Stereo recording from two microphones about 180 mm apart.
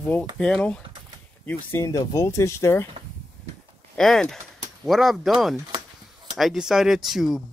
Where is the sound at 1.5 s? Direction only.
15° left (ahead or behind).